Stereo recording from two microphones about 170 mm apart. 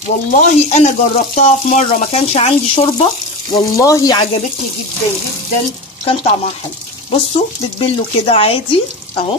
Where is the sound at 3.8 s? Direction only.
20° left (ahead or behind).